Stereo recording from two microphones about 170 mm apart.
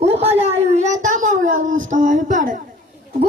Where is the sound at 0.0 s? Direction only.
35° right (ahead or behind).